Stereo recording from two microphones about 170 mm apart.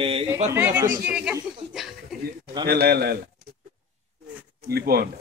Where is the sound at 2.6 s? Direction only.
70° right (ahead or behind).